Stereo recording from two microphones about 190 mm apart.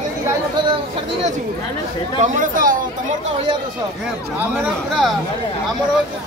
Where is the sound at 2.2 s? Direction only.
45° right (ahead or behind).